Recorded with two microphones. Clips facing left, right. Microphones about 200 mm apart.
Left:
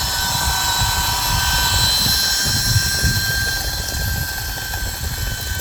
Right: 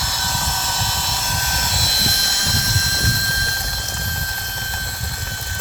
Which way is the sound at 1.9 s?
60° right (ahead or behind).